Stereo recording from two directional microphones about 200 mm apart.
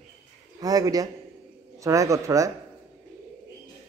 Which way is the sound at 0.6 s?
20° right (ahead or behind).